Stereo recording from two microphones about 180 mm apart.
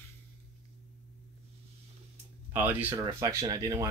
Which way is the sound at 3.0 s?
20° right (ahead or behind).